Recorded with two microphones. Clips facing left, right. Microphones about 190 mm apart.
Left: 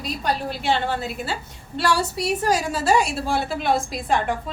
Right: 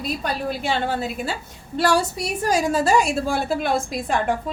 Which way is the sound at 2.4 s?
45° right (ahead or behind).